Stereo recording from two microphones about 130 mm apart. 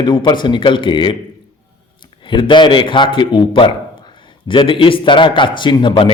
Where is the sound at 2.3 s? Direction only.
40° left (ahead or behind).